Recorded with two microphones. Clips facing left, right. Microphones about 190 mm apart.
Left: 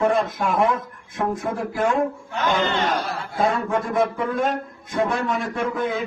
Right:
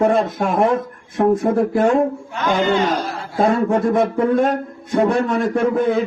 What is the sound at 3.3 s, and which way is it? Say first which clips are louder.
Speech: right 6 dB; 40° right (ahead or behind).